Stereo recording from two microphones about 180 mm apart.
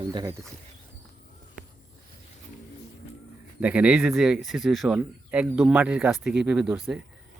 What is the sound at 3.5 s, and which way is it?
Speech, 5° right (ahead or behind).